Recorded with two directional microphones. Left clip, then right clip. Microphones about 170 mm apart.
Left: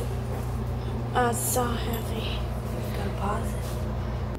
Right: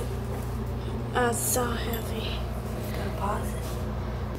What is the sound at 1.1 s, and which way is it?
Music, 10° right (ahead or behind).